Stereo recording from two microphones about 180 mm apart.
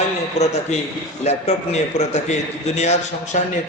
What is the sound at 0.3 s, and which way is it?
A man's voice, 40° left (ahead or behind).